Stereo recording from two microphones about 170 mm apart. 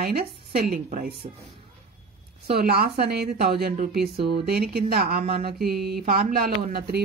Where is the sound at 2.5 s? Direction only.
65° right (ahead or behind).